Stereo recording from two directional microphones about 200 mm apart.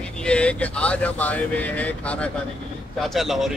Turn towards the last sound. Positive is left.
turn(degrees=0)  # may be behind; listen again after turning